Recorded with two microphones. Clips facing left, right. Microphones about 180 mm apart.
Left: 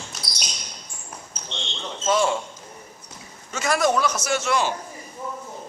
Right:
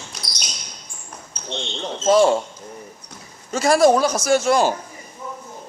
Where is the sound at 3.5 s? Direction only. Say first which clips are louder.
Right 7 dB; 35° right (ahead or behind).